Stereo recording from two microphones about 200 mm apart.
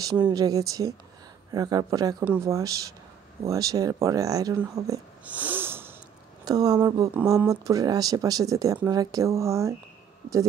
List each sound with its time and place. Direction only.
0.0 s speech: 20° right (ahead or behind)